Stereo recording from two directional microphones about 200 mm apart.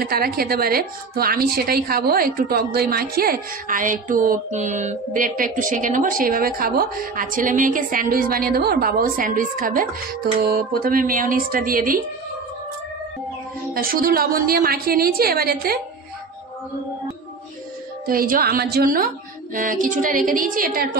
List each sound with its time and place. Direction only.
0.0 s a woman's voice: 50° right (ahead or behind)
13.7 s a woman's voice: 45° right (ahead or behind)
18.0 s a woman's voice: 45° right (ahead or behind)